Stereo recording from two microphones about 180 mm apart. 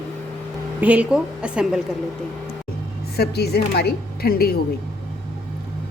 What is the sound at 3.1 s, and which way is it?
Speech, 60° left (ahead or behind).